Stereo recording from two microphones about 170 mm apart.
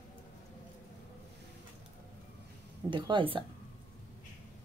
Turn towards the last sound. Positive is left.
turn(degrees=-30)  # may be behind; listen again after turning